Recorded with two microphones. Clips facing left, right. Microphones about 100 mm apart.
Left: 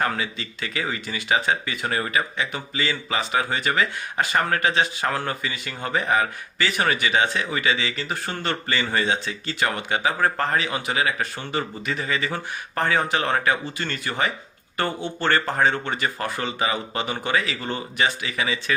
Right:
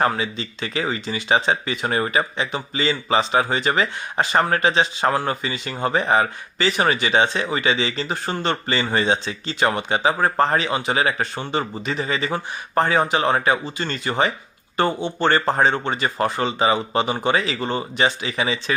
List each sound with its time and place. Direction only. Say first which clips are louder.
0.0 s speech: right 4 dB; 30° right (ahead or behind)